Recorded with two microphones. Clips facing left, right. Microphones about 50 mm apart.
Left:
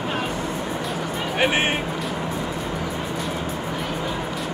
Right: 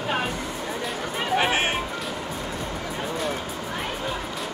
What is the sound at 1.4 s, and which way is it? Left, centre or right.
Speech, left.